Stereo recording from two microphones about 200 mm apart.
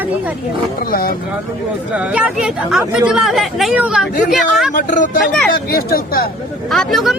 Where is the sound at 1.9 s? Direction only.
5° right (ahead or behind).